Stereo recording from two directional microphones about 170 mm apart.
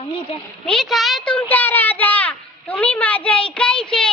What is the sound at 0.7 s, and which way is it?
A child's voice, centre (ahead or behind).